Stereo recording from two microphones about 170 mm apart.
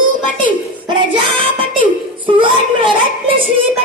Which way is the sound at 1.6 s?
30° right (ahead or behind).